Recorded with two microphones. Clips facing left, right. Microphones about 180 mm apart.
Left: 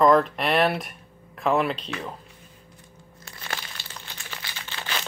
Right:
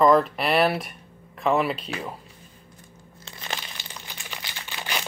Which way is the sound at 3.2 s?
20° right (ahead or behind).